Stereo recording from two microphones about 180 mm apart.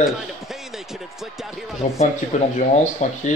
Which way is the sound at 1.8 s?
35° left (ahead or behind).